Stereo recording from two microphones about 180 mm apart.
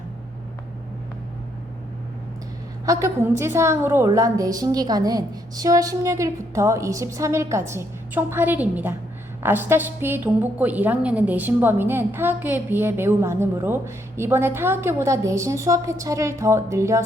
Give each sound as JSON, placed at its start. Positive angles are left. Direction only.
{"t": 2.8, "sound": "a woman's voice", "side_deg": -15}